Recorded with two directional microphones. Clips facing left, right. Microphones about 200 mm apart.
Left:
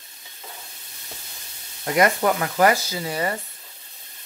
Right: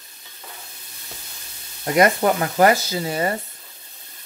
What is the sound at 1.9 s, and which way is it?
Speech, 30° right (ahead or behind).